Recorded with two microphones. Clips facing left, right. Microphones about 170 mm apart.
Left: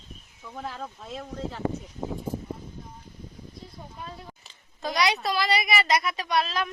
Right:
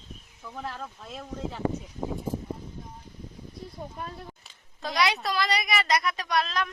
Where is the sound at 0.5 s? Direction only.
Centre (ahead or behind).